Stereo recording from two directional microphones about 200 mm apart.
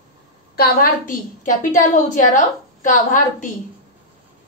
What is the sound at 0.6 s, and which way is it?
A woman's voice, 45° left (ahead or behind).